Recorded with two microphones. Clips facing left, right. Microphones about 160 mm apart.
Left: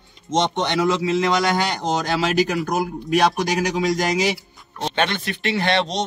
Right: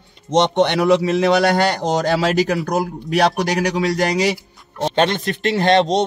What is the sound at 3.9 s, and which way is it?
Speech, 65° right (ahead or behind).